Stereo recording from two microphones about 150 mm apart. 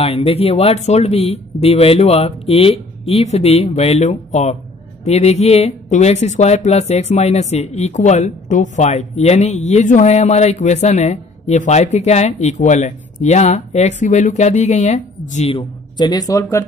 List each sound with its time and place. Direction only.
0.0 s speech: 40° left (ahead or behind)
15.5 s speech: 30° left (ahead or behind)